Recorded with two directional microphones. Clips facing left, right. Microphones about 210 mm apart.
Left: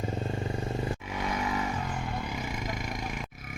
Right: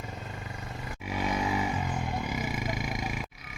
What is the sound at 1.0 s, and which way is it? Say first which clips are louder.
Motorcycle: right 2 dB; 10° right (ahead or behind).